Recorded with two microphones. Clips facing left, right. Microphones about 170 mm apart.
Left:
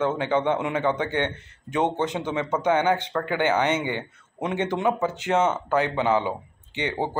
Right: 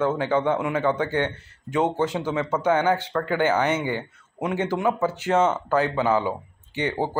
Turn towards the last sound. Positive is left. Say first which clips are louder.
# right 2 dB
turn(degrees=20)  # may be behind; listen again after turning